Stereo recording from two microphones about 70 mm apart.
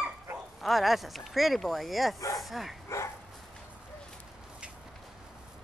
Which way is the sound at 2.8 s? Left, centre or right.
Left.